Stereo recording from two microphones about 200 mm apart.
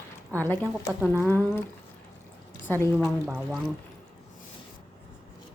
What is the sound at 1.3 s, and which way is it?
Speech, 10° left (ahead or behind).